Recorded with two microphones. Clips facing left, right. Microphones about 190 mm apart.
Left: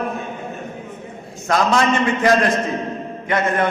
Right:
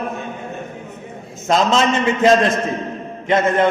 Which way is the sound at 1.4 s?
20° right (ahead or behind).